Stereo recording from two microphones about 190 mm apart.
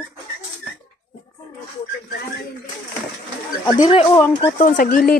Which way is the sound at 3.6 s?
25° left (ahead or behind).